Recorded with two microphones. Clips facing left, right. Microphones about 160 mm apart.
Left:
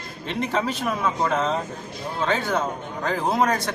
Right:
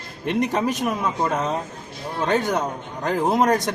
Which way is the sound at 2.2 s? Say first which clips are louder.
Right 2 dB; 15° right (ahead or behind).